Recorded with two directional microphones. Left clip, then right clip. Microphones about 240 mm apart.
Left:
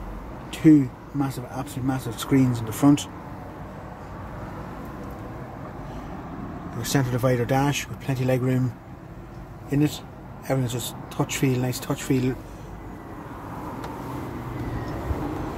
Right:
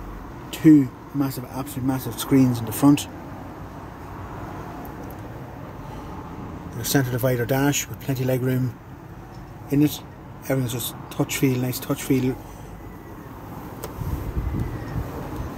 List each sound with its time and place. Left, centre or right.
0.5 s speech: centre
6.8 s speech: centre
9.7 s speech: centre